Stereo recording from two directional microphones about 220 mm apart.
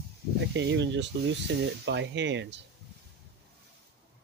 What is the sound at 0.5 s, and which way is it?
Speech, 50° right (ahead or behind).